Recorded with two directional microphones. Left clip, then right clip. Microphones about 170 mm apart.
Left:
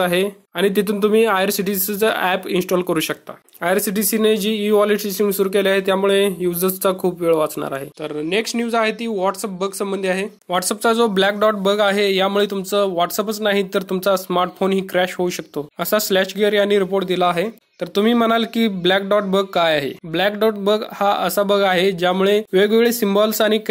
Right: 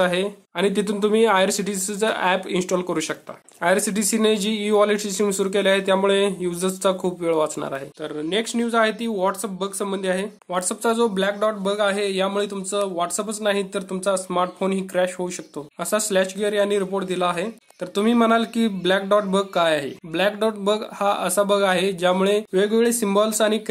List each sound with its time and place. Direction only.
0.0 s speech: 25° left (ahead or behind)
10.5 s speech: 30° left (ahead or behind)